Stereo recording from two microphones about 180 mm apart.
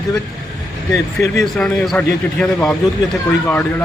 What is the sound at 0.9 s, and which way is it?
Speech, 15° left (ahead or behind).